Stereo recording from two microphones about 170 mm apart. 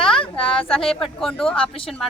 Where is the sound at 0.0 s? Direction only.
5° left (ahead or behind).